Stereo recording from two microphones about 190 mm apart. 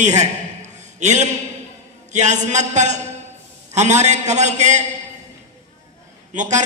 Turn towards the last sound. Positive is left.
turn(degrees=-40)  # may be behind; listen again after turning